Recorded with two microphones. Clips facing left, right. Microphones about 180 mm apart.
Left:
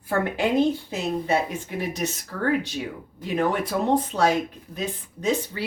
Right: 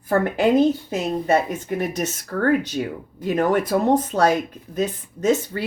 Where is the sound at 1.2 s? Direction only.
50° right (ahead or behind).